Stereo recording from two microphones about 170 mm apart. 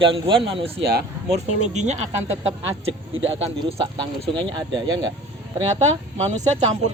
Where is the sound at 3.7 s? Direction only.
30° right (ahead or behind).